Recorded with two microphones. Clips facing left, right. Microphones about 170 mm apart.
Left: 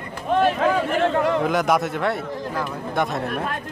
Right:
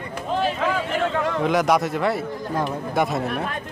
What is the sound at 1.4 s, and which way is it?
Speech, centre (ahead or behind).